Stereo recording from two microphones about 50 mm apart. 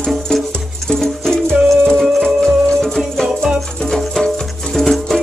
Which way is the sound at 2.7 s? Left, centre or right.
Centre.